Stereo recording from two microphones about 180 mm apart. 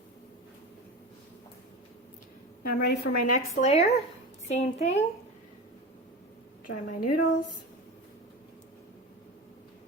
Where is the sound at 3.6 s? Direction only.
35° left (ahead or behind).